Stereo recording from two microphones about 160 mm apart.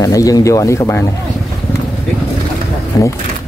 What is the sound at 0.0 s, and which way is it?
Speech, 20° left (ahead or behind).